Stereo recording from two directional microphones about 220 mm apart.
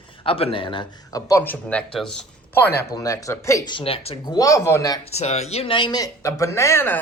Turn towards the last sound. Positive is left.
turn(degrees=10)  # may be behind; listen again after turning